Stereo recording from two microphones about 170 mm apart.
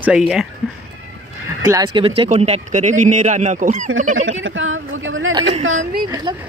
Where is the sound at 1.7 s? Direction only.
25° right (ahead or behind); by 4.2 s 45° right (ahead or behind).